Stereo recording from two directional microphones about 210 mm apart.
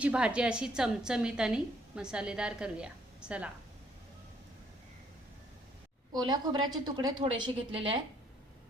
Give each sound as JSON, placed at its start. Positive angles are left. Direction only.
{"t": 0.0, "sound": "a woman's voice", "side_deg": -5}
{"t": 6.1, "sound": "a woman's voice", "side_deg": -20}